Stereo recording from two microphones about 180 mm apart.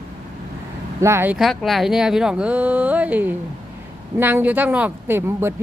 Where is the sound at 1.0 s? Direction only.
10° right (ahead or behind).